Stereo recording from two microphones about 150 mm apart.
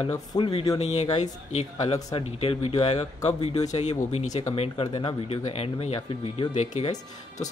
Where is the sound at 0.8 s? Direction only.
45° left (ahead or behind).